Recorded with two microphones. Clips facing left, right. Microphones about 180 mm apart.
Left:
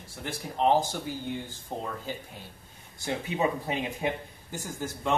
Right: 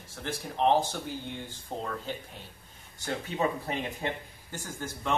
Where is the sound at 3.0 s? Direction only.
15° left (ahead or behind).